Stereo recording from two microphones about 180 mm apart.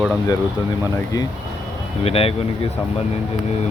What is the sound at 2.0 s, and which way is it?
Speech, 35° left (ahead or behind).